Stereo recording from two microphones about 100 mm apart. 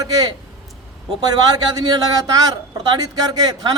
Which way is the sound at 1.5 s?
40° right (ahead or behind).